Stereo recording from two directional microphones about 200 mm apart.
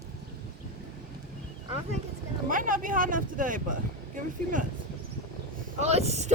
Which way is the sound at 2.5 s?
40° right (ahead or behind).